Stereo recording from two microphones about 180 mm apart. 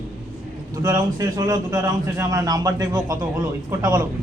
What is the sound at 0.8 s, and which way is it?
A man's voice, 20° right (ahead or behind).